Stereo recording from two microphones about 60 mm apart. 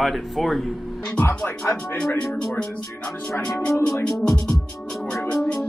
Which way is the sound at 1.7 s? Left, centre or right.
Left.